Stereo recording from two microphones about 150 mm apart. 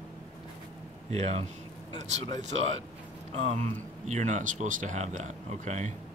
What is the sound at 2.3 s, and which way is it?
Speech, 50° right (ahead or behind).